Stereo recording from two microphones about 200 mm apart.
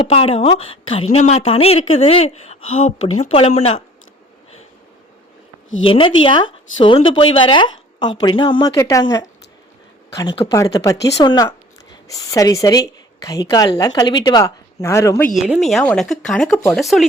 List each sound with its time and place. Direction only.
0.1 s speech: 30° left (ahead or behind)
5.8 s a woman's voice: 25° left (ahead or behind)
15.4 s speech: centre (ahead or behind)